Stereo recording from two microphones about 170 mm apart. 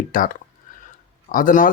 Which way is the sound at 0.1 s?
55° left (ahead or behind).